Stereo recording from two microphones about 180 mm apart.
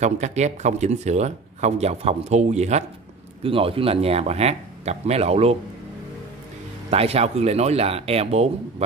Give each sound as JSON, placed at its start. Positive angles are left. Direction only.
{"t": 0.0, "sound": "speech", "side_deg": -40}
{"t": 6.9, "sound": "speech", "side_deg": -35}